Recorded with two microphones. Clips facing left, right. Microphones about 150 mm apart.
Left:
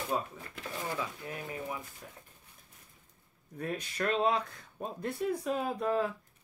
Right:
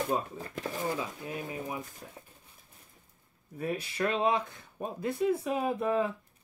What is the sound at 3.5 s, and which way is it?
Speech, 5° right (ahead or behind).